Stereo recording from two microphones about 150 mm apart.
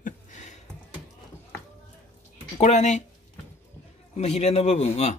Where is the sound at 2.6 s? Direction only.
50° left (ahead or behind).